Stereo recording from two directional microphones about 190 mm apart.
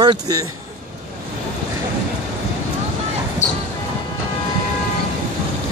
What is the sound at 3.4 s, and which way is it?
Music, 40° left (ahead or behind).